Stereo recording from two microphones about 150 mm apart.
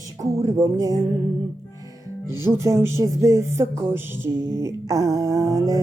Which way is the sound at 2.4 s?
20° right (ahead or behind).